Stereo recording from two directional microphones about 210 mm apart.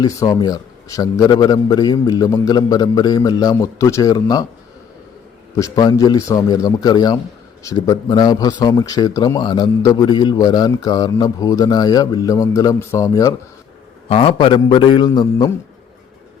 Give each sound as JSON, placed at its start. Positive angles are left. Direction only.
{"t": 0.0, "sound": "a man's voice", "side_deg": 15}
{"t": 5.5, "sound": "a man's voice", "side_deg": 15}
{"t": 14.1, "sound": "speech", "side_deg": 25}